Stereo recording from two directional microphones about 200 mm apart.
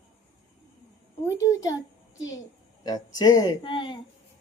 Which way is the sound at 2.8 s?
20° left (ahead or behind).